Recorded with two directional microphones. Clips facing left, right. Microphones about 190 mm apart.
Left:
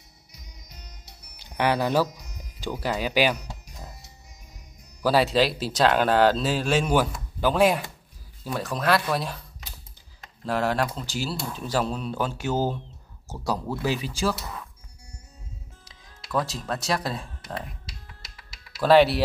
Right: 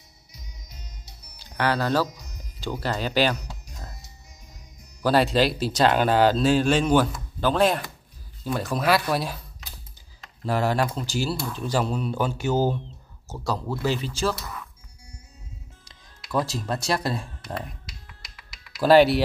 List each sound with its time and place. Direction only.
1.6 s speech: 15° left (ahead or behind)
5.0 s speech: 5° left (ahead or behind)
10.4 s speech: centre (ahead or behind)
13.3 s speech: 15° left (ahead or behind)
16.3 s speech: centre (ahead or behind)